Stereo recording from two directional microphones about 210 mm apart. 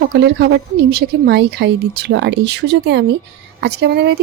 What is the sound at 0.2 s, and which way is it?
Speech, 50° right (ahead or behind).